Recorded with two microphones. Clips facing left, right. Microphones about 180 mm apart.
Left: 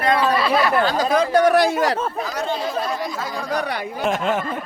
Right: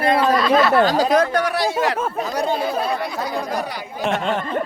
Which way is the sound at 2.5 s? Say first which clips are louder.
Right 2 dB; 60° right (ahead or behind).